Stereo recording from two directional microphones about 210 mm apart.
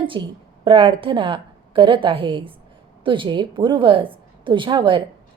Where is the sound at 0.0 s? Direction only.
25° right (ahead or behind).